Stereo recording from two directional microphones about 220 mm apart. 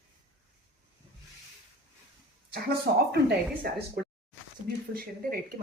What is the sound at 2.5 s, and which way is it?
A woman's voice, 45° right (ahead or behind).